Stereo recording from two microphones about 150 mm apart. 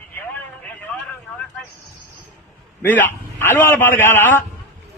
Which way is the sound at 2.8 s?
15° left (ahead or behind).